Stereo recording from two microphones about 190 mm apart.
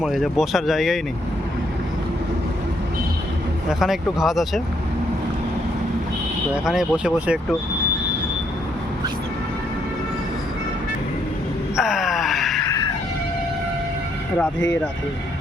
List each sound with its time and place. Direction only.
0.0 s speech: centre (ahead or behind)
3.7 s speech: centre (ahead or behind)
6.7 s speech: 5° right (ahead or behind)
11.8 s wail: centre (ahead or behind)
12.6 s music: 20° left (ahead or behind)